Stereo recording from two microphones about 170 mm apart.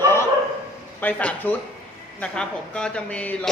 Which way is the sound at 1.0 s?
10° left (ahead or behind).